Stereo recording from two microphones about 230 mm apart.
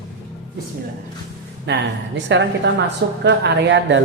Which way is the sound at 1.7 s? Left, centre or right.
Right.